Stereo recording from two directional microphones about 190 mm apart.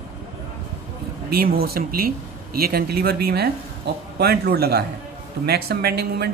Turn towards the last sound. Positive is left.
turn(degrees=-55)  # may be behind; listen again after turning